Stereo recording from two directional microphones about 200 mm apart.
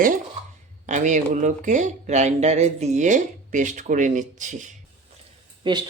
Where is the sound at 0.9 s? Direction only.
35° right (ahead or behind).